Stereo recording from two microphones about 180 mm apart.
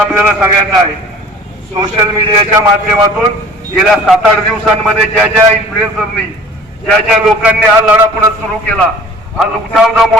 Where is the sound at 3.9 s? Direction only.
Centre (ahead or behind).